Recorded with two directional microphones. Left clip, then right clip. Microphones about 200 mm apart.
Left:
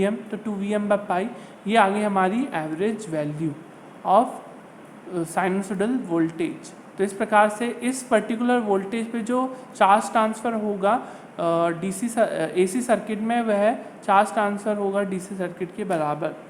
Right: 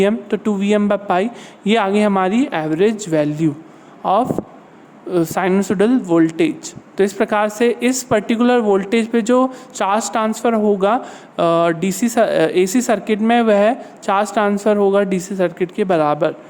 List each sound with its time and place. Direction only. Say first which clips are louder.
0.0 s speech: right 9 dB; 50° right (ahead or behind)